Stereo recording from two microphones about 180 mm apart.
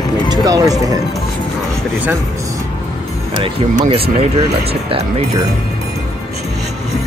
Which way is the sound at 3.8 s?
35° right (ahead or behind).